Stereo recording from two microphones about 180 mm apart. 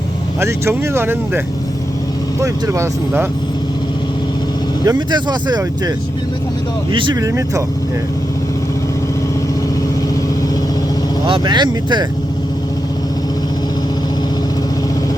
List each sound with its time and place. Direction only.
0.3 s speech: 15° right (ahead or behind)
2.4 s speech: 15° right (ahead or behind)
4.9 s speech: 25° right (ahead or behind)
6.9 s speech: 25° right (ahead or behind)
11.3 s speech: 25° right (ahead or behind)